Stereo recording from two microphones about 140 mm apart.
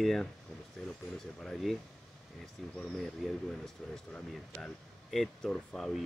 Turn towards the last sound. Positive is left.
turn(degrees=0)  # may be behind; listen again after turning